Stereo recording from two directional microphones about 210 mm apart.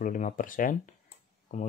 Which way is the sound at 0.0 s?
40° left (ahead or behind).